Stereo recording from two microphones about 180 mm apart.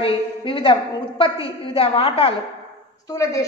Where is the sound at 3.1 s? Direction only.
15° left (ahead or behind).